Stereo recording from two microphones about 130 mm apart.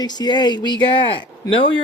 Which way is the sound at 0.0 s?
35° left (ahead or behind).